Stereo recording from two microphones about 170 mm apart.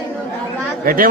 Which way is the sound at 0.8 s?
55° right (ahead or behind).